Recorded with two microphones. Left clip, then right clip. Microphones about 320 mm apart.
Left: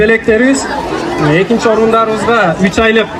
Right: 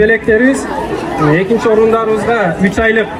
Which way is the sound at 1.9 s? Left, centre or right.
Centre.